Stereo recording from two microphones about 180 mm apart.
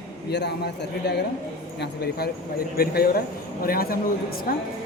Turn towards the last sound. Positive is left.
turn(degrees=55)  # may be behind; listen again after turning